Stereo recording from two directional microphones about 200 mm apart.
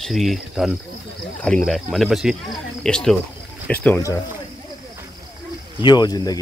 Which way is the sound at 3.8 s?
15° left (ahead or behind).